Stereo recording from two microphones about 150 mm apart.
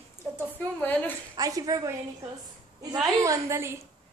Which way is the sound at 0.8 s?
10° left (ahead or behind).